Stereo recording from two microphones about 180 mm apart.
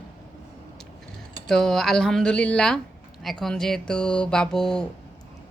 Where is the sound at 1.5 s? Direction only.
Centre (ahead or behind).